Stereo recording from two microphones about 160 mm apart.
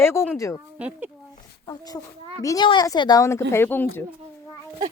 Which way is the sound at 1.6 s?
25° left (ahead or behind).